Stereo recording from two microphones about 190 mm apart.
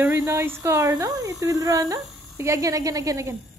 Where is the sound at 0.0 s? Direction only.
15° right (ahead or behind).